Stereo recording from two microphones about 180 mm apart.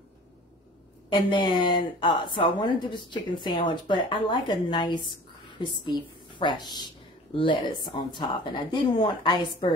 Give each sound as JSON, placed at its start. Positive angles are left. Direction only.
{"t": 1.3, "sound": "a woman's voice", "side_deg": 25}